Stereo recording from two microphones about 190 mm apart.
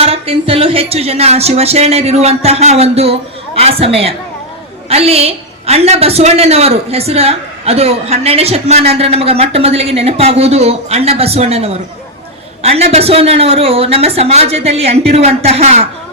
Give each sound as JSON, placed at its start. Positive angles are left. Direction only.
{"t": 0.0, "sound": "speech", "side_deg": -30}